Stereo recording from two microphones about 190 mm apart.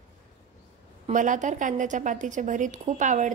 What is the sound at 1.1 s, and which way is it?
A woman's voice, 40° right (ahead or behind).